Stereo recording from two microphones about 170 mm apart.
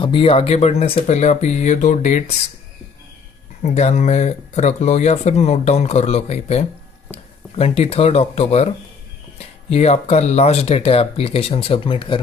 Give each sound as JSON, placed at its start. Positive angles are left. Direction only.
{"t": 0.0, "sound": "speech", "side_deg": 30}
{"t": 3.6, "sound": "speech", "side_deg": 40}